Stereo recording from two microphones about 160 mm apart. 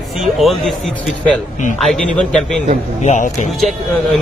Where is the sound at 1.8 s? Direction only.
5° left (ahead or behind).